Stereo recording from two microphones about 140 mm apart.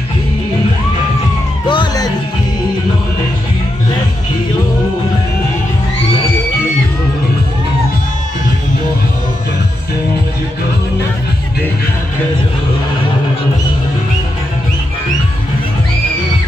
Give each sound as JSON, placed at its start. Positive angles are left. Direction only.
{"t": 1.7, "sound": "music", "side_deg": 30}